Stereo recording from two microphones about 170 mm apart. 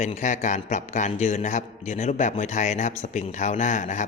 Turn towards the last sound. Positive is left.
turn(degrees=45)  # may be behind; listen again after turning